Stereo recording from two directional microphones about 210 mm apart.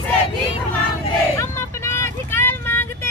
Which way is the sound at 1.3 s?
15° left (ahead or behind).